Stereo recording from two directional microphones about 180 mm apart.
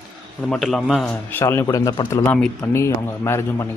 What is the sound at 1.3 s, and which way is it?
Speech, 15° left (ahead or behind).